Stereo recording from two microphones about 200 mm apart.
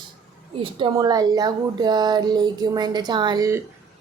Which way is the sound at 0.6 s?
25° right (ahead or behind).